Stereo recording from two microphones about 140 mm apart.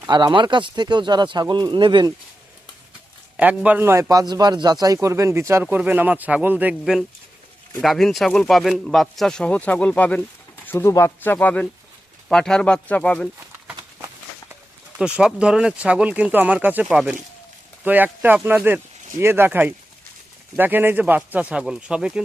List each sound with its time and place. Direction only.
0.1 s speech: 30° right (ahead or behind)
3.3 s a man's voice: 10° right (ahead or behind); by 13.2 s 10° left (ahead or behind)
14.9 s speech: 5° right (ahead or behind)